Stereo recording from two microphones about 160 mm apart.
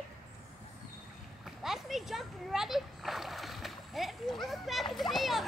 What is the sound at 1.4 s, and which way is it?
Splash, centre (ahead or behind).